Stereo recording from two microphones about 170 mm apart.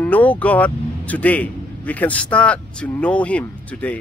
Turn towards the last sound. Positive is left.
turn(degrees=10)  # may be behind; listen again after turning